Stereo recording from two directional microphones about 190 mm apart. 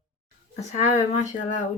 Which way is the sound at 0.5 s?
35° left (ahead or behind).